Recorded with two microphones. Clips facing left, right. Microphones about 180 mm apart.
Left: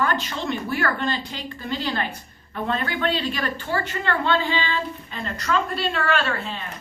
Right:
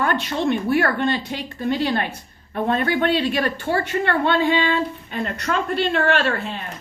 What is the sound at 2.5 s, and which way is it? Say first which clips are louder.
A woman's voice: right 5 dB; 45° right (ahead or behind).